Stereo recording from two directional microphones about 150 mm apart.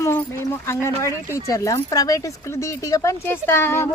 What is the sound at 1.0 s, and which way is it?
Speech, 20° left (ahead or behind).